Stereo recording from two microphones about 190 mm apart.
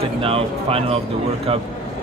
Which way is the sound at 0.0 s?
30° right (ahead or behind).